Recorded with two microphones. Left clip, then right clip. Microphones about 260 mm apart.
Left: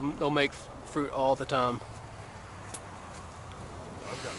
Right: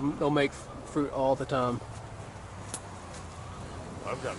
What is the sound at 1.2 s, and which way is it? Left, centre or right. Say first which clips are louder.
Speech: left 1 dB; centre.